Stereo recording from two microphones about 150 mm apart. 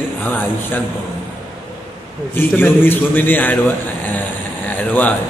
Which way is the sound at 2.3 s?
15° left (ahead or behind).